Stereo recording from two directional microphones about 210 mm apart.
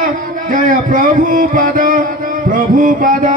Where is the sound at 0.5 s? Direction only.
40° right (ahead or behind).